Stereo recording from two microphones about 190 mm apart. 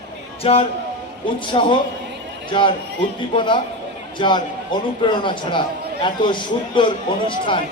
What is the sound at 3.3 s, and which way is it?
A man's voice, 25° left (ahead or behind).